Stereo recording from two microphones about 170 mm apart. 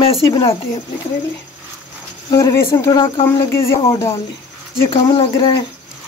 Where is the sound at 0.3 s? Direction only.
20° left (ahead or behind).